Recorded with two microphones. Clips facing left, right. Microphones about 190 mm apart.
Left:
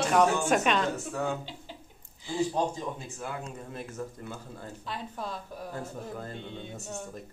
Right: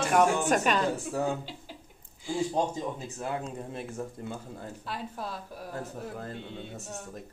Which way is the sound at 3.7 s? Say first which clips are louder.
Right 1 dB; 25° right (ahead or behind).